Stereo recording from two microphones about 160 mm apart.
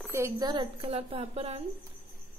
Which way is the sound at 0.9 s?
40° right (ahead or behind).